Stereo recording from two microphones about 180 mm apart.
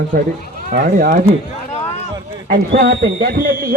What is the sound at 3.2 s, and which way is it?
Speech, 55° right (ahead or behind).